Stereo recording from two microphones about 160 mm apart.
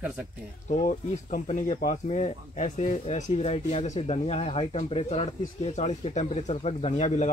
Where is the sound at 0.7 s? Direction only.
50° left (ahead or behind).